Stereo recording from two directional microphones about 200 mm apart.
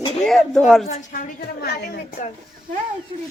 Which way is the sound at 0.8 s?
35° left (ahead or behind).